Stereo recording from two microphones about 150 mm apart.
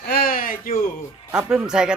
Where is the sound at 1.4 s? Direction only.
5° right (ahead or behind).